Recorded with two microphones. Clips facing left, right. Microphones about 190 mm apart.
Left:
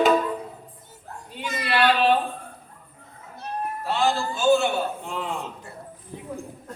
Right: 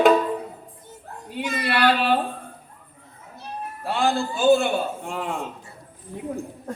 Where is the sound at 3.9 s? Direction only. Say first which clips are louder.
Right 2 dB; 55° right (ahead or behind).